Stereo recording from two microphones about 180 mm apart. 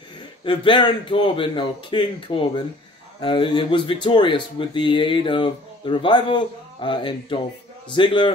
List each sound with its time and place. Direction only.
0.5 s speech: 25° left (ahead or behind)